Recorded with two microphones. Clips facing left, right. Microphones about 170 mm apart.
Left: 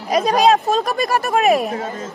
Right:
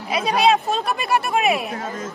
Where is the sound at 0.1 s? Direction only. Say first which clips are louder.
Left 4 dB; 40° left (ahead or behind).